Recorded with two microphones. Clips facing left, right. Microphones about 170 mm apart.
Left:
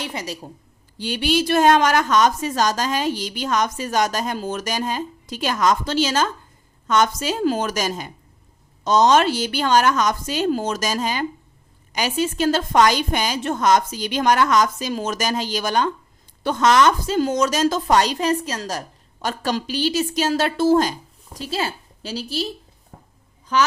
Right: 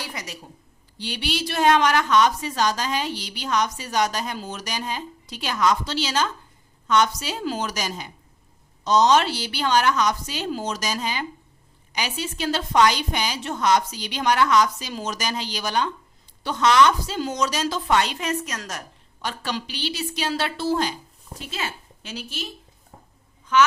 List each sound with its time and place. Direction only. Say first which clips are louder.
0.0 s a woman's voice: left 6 dB; 30° left (ahead or behind)
0.9 s a woman's voice: left 8 dB; 45° left (ahead or behind)
21.3 s a woman's voice: left 6 dB; 35° left (ahead or behind)